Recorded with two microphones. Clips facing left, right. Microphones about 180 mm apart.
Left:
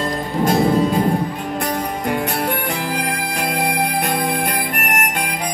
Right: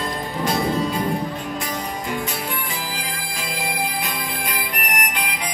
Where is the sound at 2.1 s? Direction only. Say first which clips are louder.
Left 6 dB; 65° left (ahead or behind).